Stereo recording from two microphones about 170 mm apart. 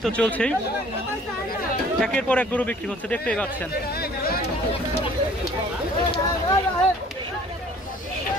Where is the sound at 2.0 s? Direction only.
5° left (ahead or behind).